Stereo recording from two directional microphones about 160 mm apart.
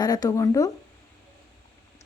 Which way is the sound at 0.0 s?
25° left (ahead or behind).